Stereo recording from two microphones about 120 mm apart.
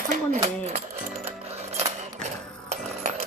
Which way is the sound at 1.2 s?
60° right (ahead or behind).